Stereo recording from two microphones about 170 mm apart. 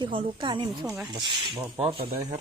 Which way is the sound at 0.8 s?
15° right (ahead or behind).